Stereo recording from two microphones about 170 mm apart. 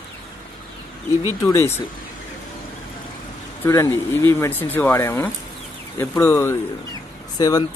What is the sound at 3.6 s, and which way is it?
Speech, 15° left (ahead or behind).